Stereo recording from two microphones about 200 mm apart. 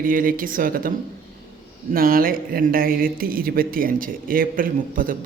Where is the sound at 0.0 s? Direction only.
45° right (ahead or behind).